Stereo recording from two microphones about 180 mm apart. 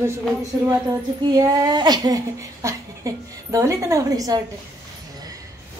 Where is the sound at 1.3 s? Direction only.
20° right (ahead or behind).